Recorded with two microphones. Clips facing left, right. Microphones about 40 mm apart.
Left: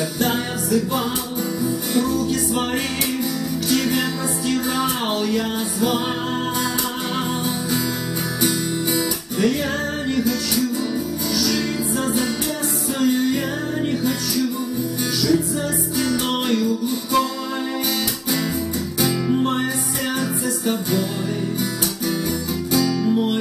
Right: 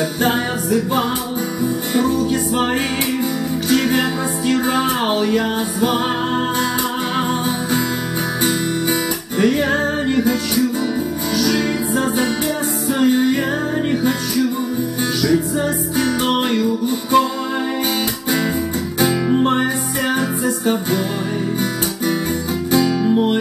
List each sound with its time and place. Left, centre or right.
0.2 s music: right
9.4 s music: right
11.3 s music: right
16.3 s music: right
19.2 s music: right
22.7 s music: right